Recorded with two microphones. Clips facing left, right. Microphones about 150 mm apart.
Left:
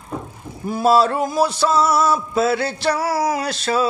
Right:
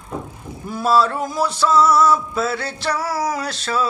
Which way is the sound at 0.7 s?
20° left (ahead or behind).